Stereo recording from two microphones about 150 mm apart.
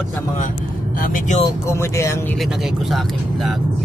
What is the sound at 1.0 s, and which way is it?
Speech, 65° left (ahead or behind).